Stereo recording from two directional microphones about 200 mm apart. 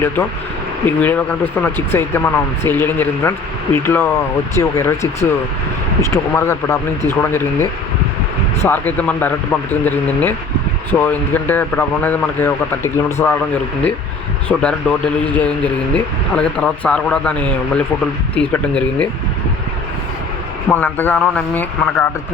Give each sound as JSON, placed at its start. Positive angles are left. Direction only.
{"t": 0.9, "sound": "speech", "side_deg": 10}
{"t": 14.4, "sound": "a man's voice", "side_deg": 5}
{"t": 20.7, "sound": "speech", "side_deg": 10}